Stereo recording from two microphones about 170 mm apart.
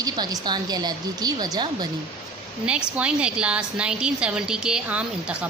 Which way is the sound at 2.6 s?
5° right (ahead or behind).